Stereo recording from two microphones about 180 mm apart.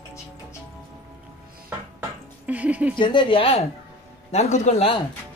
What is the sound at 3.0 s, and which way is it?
A man's voice, 25° left (ahead or behind).